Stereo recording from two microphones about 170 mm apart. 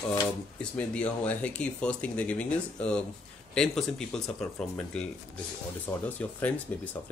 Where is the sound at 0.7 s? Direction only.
5° left (ahead or behind).